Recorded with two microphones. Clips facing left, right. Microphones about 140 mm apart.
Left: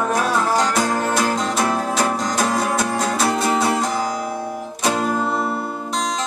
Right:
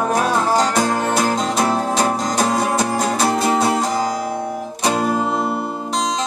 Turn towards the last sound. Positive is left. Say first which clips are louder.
# right 2 dB
turn(degrees=-5)  # may be behind; listen again after turning